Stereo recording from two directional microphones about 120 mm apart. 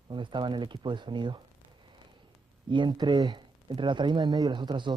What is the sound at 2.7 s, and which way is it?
Speech, 40° right (ahead or behind).